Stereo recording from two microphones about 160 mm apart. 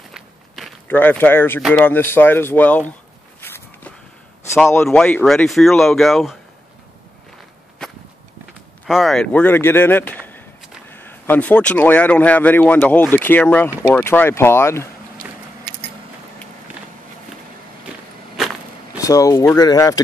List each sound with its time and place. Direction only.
0.1 s walk: centre (ahead or behind)
0.8 s speech: 10° left (ahead or behind)
3.3 s walk: 15° left (ahead or behind)
4.8 s speech: 5° left (ahead or behind)
7.8 s walk: 5° left (ahead or behind)
8.8 s speech: centre (ahead or behind); by 14.9 s 15° left (ahead or behind)
18.9 s speech: 20° left (ahead or behind)